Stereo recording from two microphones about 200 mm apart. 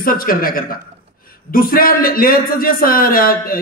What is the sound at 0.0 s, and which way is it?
A man's voice, 45° left (ahead or behind).